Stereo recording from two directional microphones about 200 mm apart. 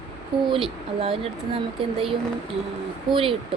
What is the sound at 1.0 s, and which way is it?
Speech, 30° right (ahead or behind).